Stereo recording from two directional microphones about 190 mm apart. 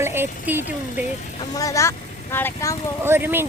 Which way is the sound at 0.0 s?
10° right (ahead or behind).